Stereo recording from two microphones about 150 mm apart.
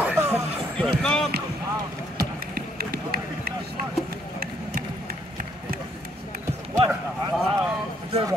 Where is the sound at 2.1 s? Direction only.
90° right.